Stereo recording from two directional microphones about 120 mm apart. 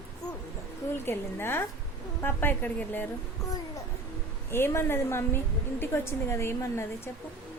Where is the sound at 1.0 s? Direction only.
20° left (ahead or behind).